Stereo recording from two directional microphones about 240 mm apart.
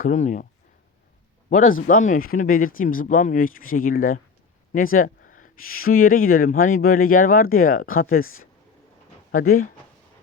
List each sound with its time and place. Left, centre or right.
0.0 s speech: left
1.5 s a man's voice: left
9.4 s speech: left